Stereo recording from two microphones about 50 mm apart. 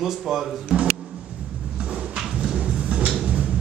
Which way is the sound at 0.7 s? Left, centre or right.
Right.